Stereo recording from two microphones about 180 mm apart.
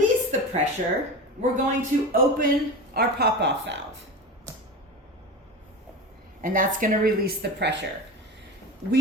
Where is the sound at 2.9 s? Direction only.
60° right (ahead or behind).